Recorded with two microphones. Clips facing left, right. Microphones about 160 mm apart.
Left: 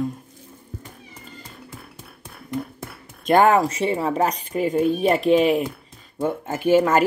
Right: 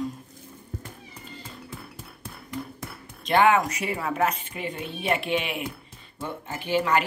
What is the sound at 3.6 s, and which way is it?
A woman's voice, 30° left (ahead or behind).